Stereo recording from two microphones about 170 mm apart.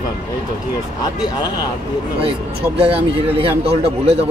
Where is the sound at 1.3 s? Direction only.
25° left (ahead or behind).